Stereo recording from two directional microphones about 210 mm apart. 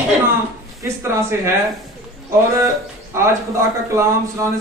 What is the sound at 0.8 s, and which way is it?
Speech, 15° right (ahead or behind).